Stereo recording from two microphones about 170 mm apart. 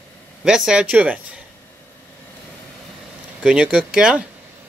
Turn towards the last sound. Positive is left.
turn(degrees=-5)  # may be behind; listen again after turning